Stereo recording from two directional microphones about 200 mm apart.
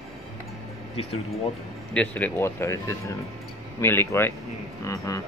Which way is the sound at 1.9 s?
10° left (ahead or behind).